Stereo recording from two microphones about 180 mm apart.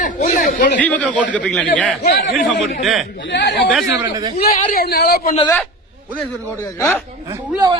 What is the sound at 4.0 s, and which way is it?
Speech, 25° right (ahead or behind).